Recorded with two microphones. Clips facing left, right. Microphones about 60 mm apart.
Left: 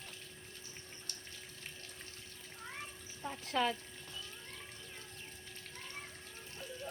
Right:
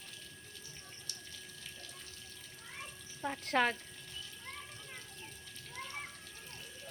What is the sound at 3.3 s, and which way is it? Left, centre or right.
Frying, right.